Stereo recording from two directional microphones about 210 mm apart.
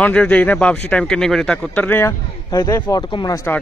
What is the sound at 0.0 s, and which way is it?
A man's voice, 5° left (ahead or behind).